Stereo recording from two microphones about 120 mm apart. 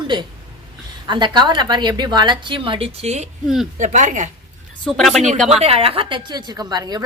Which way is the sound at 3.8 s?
90° right.